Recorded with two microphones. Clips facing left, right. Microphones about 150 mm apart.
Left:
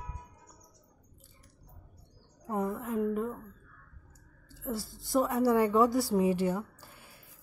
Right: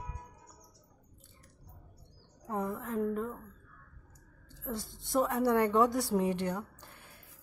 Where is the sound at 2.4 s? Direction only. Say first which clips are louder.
Left 3 dB; 5° left (ahead or behind).